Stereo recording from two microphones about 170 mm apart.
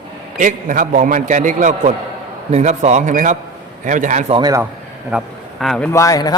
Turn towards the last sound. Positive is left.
turn(degrees=20)  # may be behind; listen again after turning